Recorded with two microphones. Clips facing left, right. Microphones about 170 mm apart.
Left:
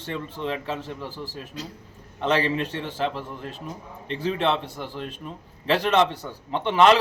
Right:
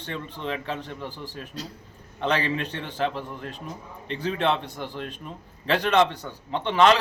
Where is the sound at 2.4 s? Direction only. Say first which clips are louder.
Left 3 dB; 35° left (ahead or behind).